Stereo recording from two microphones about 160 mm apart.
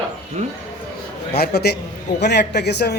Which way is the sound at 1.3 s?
85° left.